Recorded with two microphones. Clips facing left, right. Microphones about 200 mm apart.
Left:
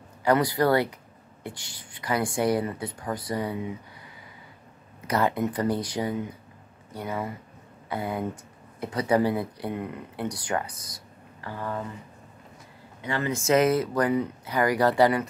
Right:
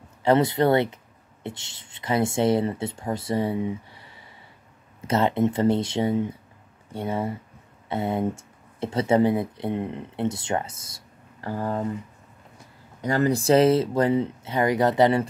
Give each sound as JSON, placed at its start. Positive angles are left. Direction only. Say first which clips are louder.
{"t": 0.2, "sound": "speech", "louder": "right 3 dB", "side_deg": -25}
{"t": 5.0, "sound": "speech", "louder": "right 3 dB", "side_deg": -25}
{"t": 11.4, "sound": "speech", "louder": "right 6 dB", "side_deg": -35}
{"t": 13.0, "sound": "speech", "louder": "right 6 dB", "side_deg": -40}